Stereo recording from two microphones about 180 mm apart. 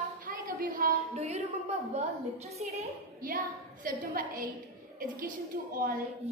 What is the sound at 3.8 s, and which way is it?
A woman's voice, 50° right (ahead or behind).